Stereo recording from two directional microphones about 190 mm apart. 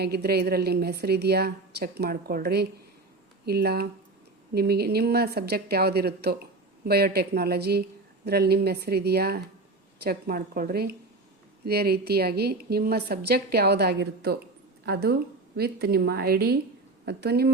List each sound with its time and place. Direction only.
0.0 s speech: 55° right (ahead or behind)